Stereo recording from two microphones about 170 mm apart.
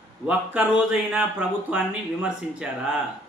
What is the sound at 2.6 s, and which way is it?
Speech, 5° right (ahead or behind).